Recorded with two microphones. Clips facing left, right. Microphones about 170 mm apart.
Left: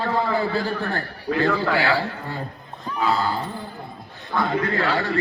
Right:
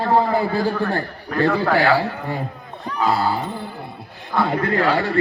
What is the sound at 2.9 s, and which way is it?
Speech, 70° right (ahead or behind).